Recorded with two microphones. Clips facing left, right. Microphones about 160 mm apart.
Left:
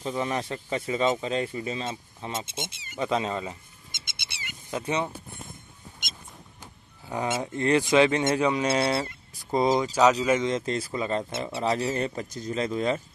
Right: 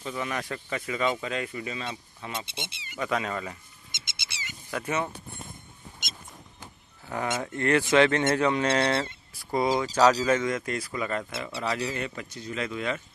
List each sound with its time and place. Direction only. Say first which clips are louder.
0.0 s speech: left 4 dB; 30° left (ahead or behind)
3.0 s speech: left 2 dB; 25° left (ahead or behind)
3.9 s bird: right 1 dB; 55° left (ahead or behind)
4.6 s speech: left 1 dB; 20° left (ahead or behind)
7.1 s speech: left 2 dB; 15° left (ahead or behind); by 13.0 s 35° left (ahead or behind)